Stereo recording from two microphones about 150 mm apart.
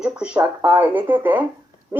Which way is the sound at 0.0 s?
5° right (ahead or behind).